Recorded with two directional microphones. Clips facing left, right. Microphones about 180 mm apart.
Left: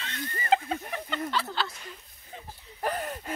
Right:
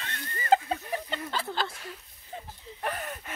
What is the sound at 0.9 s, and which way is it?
Snake, 40° right (ahead or behind).